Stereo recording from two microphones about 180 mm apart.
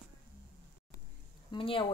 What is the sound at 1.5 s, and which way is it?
Speech, 30° left (ahead or behind).